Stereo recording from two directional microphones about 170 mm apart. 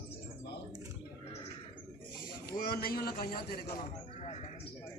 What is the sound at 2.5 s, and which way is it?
A man's voice, 65° left (ahead or behind).